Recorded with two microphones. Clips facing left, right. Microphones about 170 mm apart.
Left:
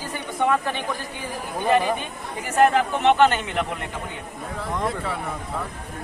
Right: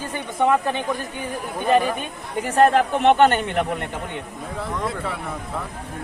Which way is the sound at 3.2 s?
45° right (ahead or behind).